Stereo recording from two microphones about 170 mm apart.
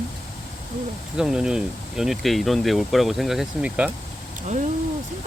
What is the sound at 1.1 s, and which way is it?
Speech, 5° right (ahead or behind).